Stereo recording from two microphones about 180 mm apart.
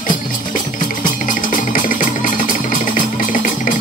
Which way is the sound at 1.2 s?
45° left (ahead or behind).